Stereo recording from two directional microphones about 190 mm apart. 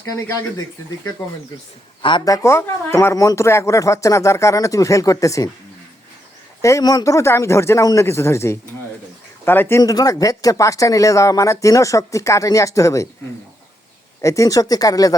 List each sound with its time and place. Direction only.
0.1 s speech: 15° left (ahead or behind)
2.0 s speech: 25° left (ahead or behind)
6.6 s speech: 15° left (ahead or behind)
14.2 s speech: 15° left (ahead or behind)